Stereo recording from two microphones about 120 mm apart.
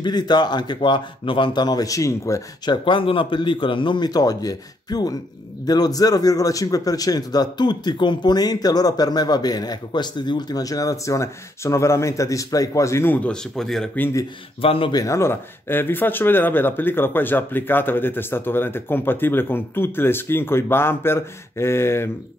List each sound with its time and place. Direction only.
0.0 s a man's voice: 35° left (ahead or behind)
2.7 s a man's voice: 45° left (ahead or behind); by 13.8 s 5° left (ahead or behind)
14.6 s speech: 50° left (ahead or behind)
14.9 s speech: 30° left (ahead or behind)